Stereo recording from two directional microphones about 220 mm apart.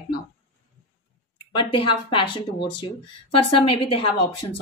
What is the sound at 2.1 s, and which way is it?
A woman's voice, 20° left (ahead or behind).